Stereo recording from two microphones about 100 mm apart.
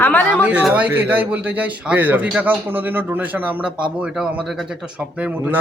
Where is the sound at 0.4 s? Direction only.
15° right (ahead or behind).